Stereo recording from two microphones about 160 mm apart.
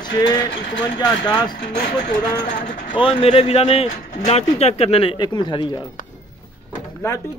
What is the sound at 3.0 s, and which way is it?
Speech, 35° left (ahead or behind).